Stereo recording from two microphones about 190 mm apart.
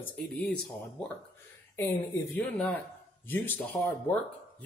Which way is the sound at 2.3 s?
5° left (ahead or behind).